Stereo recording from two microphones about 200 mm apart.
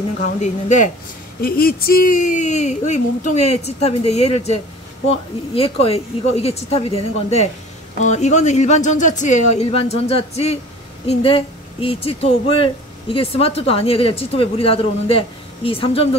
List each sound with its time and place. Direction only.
0.2 s speech: 35° left (ahead or behind)
1.4 s speech: 45° left (ahead or behind); by 6.8 s 30° left (ahead or behind)
8.0 s speech: 35° left (ahead or behind)